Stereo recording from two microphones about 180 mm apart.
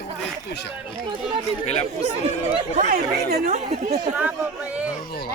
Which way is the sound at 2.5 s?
40° right (ahead or behind).